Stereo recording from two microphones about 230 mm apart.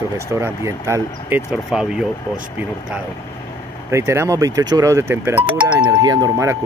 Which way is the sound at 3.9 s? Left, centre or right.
Centre.